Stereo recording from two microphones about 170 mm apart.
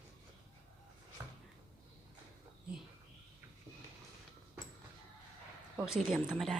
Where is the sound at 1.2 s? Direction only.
15° right (ahead or behind).